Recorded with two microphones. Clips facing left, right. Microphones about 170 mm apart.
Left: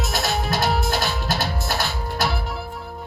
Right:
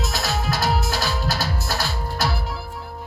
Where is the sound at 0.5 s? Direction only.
25° left (ahead or behind).